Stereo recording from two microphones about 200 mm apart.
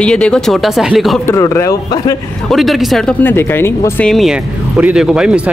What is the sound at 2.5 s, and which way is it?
Speech, centre (ahead or behind).